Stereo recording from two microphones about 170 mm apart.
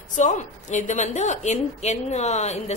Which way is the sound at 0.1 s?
45° left (ahead or behind).